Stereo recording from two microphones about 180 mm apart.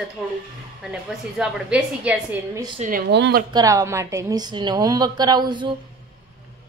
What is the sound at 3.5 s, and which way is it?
A woman's voice, 20° right (ahead or behind).